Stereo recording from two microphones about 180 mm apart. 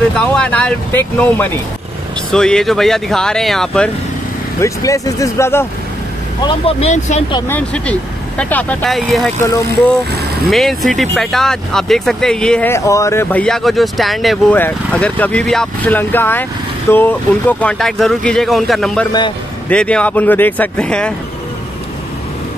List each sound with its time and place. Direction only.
0.2 s speech: 5° left (ahead or behind)
4.6 s speech: 15° left (ahead or behind)
6.4 s speech: 30° left (ahead or behind)
7.4 s speech: 10° left (ahead or behind)
10.5 s speech: centre (ahead or behind)